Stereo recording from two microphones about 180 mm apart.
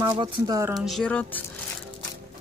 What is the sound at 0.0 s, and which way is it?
Speech, 20° right (ahead or behind).